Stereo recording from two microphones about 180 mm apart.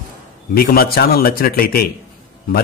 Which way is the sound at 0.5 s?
55° left (ahead or behind).